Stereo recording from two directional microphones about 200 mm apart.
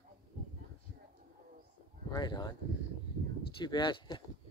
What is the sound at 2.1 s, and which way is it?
Speech, 20° left (ahead or behind).